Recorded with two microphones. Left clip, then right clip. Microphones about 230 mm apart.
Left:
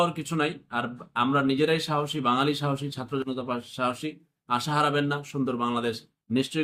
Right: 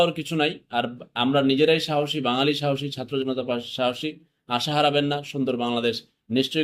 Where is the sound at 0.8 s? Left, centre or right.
Centre.